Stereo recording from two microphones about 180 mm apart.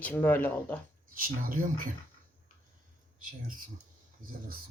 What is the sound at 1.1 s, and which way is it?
Speech, 50° right (ahead or behind).